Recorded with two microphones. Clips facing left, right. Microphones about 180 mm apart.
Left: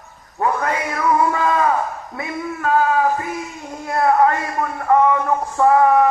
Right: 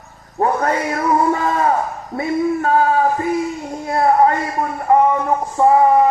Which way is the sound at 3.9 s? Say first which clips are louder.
Right 2 dB; 30° right (ahead or behind).